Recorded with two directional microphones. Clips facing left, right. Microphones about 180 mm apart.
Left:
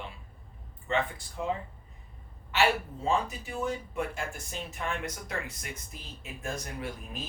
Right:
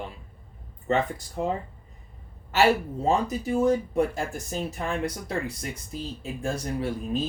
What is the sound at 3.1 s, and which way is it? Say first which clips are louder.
Speech: right 6 dB; 40° right (ahead or behind).